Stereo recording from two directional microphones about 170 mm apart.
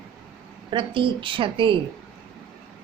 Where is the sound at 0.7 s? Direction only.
30° right (ahead or behind).